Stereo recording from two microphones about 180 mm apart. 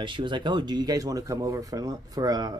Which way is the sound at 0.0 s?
25° right (ahead or behind).